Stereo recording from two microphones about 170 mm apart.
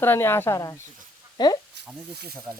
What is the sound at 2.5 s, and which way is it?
Speech, 15° right (ahead or behind).